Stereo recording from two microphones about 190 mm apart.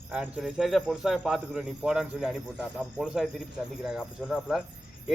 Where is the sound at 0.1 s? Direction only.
5° right (ahead or behind).